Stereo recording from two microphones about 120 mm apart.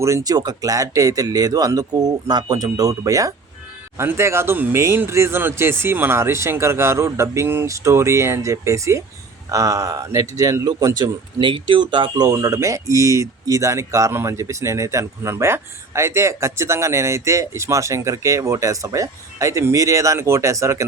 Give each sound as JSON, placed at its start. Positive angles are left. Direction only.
{"t": 0.0, "sound": "speech", "side_deg": -30}